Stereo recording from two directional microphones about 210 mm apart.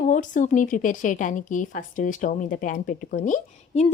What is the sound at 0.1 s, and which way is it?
Speech, 35° left (ahead or behind).